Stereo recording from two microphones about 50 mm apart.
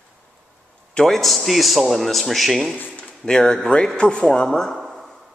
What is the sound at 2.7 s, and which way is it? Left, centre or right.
Speech, left.